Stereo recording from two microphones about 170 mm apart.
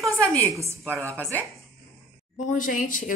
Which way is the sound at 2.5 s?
50° left (ahead or behind).